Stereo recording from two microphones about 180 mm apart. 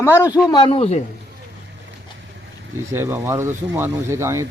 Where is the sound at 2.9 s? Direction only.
15° right (ahead or behind).